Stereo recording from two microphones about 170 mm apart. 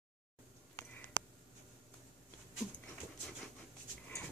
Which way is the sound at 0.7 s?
10° left (ahead or behind).